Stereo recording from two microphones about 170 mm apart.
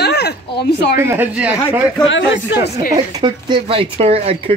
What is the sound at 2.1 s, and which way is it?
Speech, 90° left.